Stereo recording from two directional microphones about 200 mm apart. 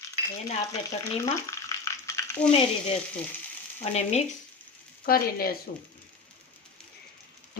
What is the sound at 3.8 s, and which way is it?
Frying, 35° left (ahead or behind).